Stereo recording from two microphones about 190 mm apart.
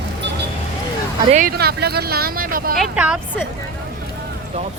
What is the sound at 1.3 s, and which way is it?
Speech, 50° right (ahead or behind).